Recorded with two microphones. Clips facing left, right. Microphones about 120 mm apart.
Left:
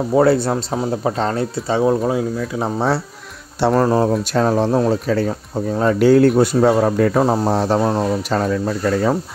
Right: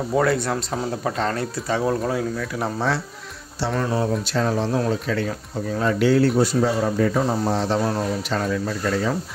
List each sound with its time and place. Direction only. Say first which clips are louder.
0.1 s speech: left 6 dB; 30° left (ahead or behind)
3.7 s speech: left 6 dB; 45° left (ahead or behind)